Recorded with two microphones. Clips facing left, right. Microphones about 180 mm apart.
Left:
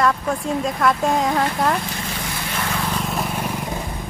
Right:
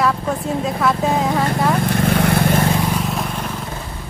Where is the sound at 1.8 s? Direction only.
60° right (ahead or behind).